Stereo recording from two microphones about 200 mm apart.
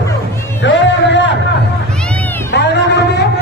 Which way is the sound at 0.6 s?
65° left (ahead or behind).